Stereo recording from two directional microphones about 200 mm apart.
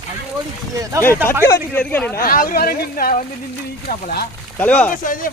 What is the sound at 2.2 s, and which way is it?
Speech, 45° left (ahead or behind).